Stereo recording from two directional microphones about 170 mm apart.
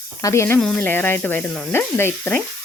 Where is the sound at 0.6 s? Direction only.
5° left (ahead or behind).